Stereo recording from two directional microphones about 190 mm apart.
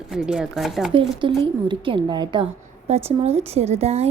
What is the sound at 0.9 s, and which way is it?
A woman's voice, 25° right (ahead or behind).